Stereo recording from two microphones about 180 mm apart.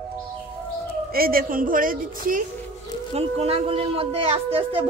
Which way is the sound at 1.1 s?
55° right (ahead or behind).